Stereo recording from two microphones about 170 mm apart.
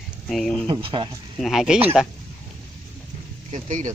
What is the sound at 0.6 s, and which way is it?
Speech, 30° right (ahead or behind).